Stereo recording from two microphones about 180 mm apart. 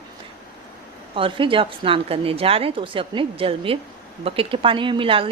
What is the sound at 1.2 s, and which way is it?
A woman's voice, 30° right (ahead or behind).